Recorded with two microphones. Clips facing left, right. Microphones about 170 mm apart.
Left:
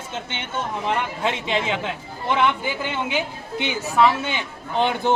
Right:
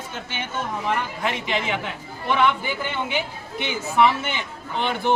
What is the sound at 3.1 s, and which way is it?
Speech, 15° left (ahead or behind).